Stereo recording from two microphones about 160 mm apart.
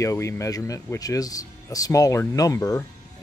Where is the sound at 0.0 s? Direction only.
20° left (ahead or behind).